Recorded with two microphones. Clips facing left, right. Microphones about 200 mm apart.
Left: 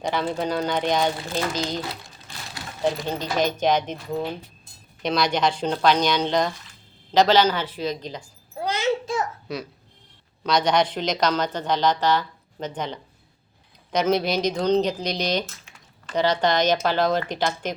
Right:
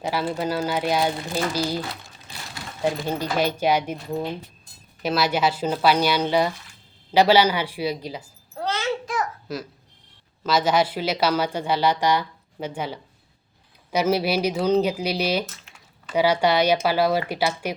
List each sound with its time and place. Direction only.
0.0 s speech: 5° right (ahead or behind)
2.8 s speech: 10° right (ahead or behind)
8.5 s a sound: 15° left (ahead or behind)
9.1 s babbling: 25° left (ahead or behind)
9.5 s a sound: centre (ahead or behind)
10.4 s speech: 5° right (ahead or behind)